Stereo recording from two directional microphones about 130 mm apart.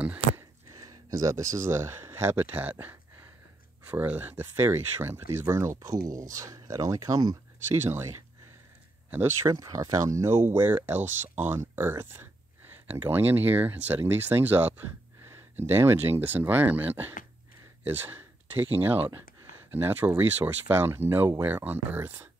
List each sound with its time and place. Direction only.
0.4 s speech: 25° right (ahead or behind)
7.8 s speech: 20° right (ahead or behind)